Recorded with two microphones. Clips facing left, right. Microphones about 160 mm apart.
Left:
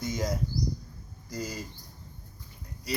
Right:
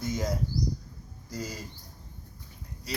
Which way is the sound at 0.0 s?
5° right (ahead or behind).